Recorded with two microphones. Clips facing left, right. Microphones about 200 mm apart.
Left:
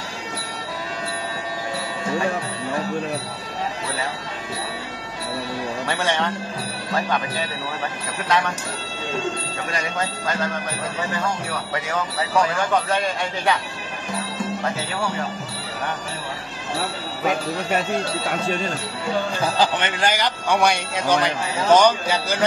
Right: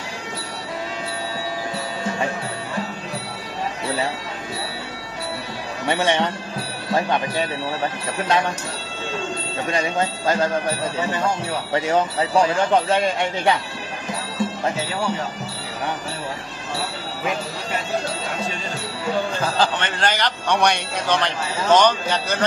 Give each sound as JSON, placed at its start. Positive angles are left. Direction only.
{"t": 5.9, "sound": "speech", "side_deg": -20}
{"t": 8.3, "sound": "speech", "side_deg": -35}
{"t": 9.7, "sound": "speech", "side_deg": -25}
{"t": 19.4, "sound": "a man's voice", "side_deg": 15}